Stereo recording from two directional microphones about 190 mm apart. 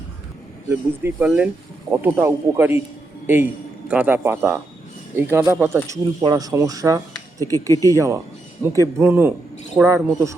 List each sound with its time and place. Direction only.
0.7 s a man's voice: 10° right (ahead or behind)